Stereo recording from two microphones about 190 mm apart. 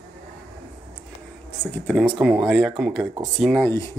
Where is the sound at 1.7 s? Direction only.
5° left (ahead or behind).